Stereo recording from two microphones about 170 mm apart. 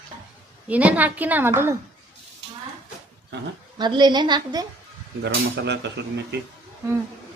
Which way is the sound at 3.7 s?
25° right (ahead or behind).